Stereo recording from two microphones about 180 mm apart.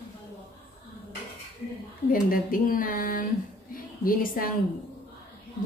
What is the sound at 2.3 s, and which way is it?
A woman's voice, 50° left (ahead or behind).